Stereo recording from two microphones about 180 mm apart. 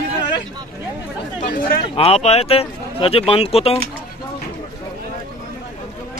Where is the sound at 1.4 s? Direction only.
50° left (ahead or behind).